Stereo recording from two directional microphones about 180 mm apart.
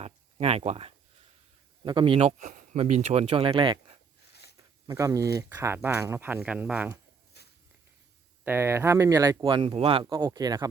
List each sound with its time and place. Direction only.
0.0 s a sound: 35° right (ahead or behind)
1.8 s speech: 25° right (ahead or behind); by 7.0 s 10° right (ahead or behind)
7.3 s walk: 65° left (ahead or behind)
8.4 s speech: 15° right (ahead or behind)
9.4 s speech: 30° right (ahead or behind)